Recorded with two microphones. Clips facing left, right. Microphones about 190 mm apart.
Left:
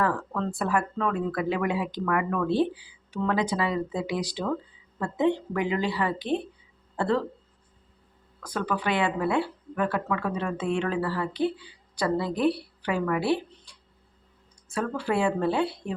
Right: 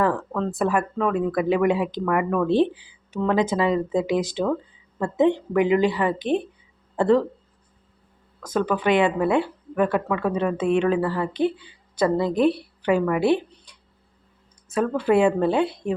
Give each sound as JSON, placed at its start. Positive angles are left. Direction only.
{"t": 0.0, "sound": "speech", "side_deg": -20}
{"t": 8.4, "sound": "a woman's voice", "side_deg": -20}